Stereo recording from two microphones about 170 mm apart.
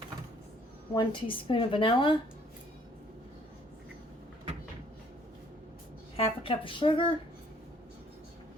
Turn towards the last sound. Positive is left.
turn(degrees=30)  # may be behind; listen again after turning